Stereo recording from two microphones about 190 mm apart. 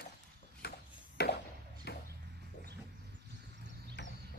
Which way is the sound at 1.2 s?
55° left (ahead or behind).